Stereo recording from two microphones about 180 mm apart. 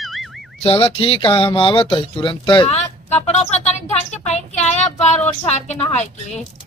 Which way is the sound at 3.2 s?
35° left (ahead or behind).